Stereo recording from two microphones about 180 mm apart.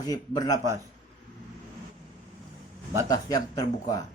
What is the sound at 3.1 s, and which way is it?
Speech, 20° left (ahead or behind).